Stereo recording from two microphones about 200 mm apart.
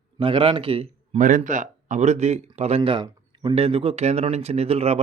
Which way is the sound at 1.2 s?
40° right (ahead or behind).